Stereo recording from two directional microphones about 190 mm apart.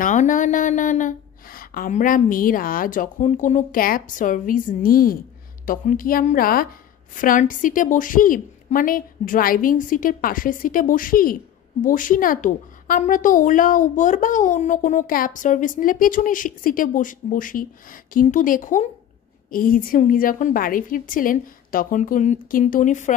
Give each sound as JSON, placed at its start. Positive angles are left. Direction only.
{"t": 0.0, "sound": "a woman's voice", "side_deg": 40}